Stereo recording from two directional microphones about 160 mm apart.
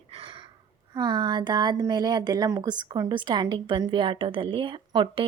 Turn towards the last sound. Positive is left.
turn(degrees=-30)  # may be behind; listen again after turning